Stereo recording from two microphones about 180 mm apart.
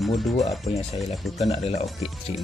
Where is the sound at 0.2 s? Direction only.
Centre (ahead or behind).